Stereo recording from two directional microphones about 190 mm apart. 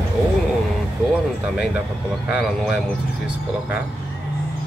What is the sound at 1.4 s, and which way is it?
Speech, 5° right (ahead or behind).